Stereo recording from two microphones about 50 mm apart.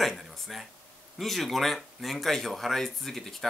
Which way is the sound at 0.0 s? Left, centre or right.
Centre.